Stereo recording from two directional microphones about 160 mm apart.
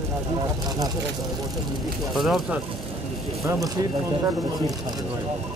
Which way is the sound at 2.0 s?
Centre (ahead or behind).